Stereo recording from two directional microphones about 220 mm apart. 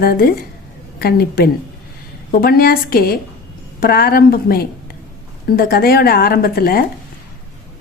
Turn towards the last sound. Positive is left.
turn(degrees=45)  # may be behind; listen again after turning